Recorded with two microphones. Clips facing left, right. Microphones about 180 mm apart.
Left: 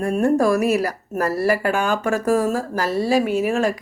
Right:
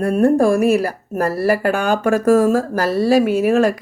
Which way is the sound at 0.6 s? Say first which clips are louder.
Right 4 dB; 55° right (ahead or behind).